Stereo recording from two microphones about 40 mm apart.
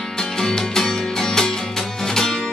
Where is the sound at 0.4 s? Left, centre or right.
Centre.